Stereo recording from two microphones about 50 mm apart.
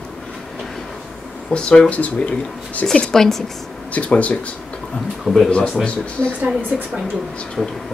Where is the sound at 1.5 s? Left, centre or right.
Left.